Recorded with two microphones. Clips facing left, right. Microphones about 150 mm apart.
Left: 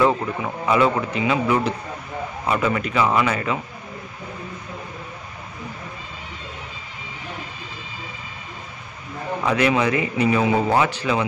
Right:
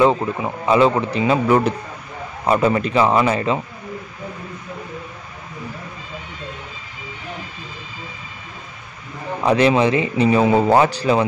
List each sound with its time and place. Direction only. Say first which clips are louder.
0.0 s speech: right 3 dB; 20° right (ahead or behind)
9.4 s speech: right 5 dB; 30° right (ahead or behind)